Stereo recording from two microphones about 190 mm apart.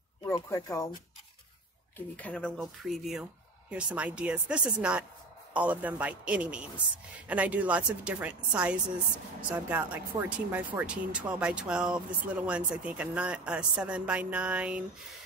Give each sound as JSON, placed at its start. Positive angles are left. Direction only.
{"t": 0.2, "sound": "speech", "side_deg": 15}
{"t": 2.1, "sound": "speech", "side_deg": 5}